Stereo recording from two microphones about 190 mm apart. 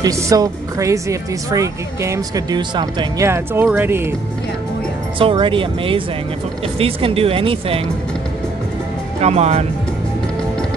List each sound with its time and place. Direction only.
0.0 s speech: 20° right (ahead or behind)
5.2 s speech: 25° right (ahead or behind)
9.2 s speech: 35° right (ahead or behind)